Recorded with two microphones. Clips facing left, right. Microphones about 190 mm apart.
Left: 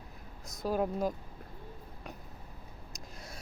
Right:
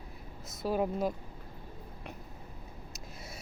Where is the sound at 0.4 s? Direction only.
5° right (ahead or behind).